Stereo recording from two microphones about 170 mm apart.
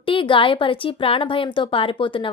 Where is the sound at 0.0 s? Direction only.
30° left (ahead or behind).